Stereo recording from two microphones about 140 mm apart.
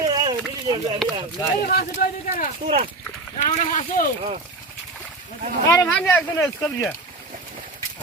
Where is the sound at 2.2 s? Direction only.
65° left (ahead or behind).